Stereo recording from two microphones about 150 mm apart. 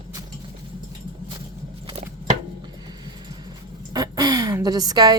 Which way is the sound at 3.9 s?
25° right (ahead or behind).